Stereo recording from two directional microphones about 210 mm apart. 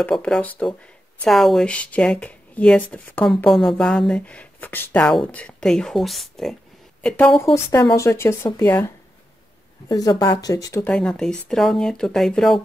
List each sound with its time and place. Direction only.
0.0 s speech: 5° left (ahead or behind)
7.5 s speech: 15° left (ahead or behind)
10.9 s speech: 5° left (ahead or behind)